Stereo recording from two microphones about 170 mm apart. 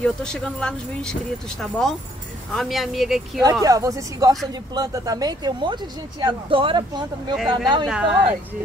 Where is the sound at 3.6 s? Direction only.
20° right (ahead or behind).